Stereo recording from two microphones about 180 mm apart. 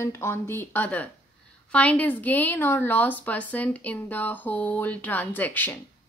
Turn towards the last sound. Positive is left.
turn(degrees=10)  # may be behind; listen again after turning